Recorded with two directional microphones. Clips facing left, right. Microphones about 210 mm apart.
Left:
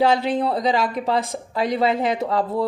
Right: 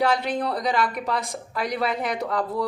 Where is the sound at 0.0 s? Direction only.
25° left (ahead or behind).